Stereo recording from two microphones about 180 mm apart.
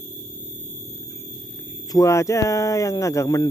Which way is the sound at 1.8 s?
20° left (ahead or behind).